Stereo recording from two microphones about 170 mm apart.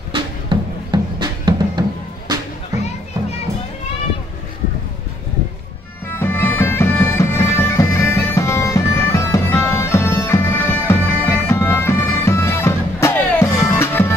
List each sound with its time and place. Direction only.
0.1 s music: 25° right (ahead or behind)
6.1 s bagpipes: 15° left (ahead or behind)